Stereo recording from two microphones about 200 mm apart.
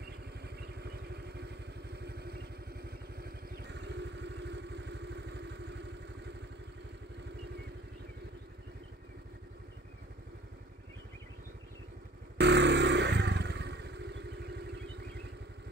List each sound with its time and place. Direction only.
0.0 s vehicle: 55° right (ahead or behind)
12.4 s motorcycle: 60° right (ahead or behind)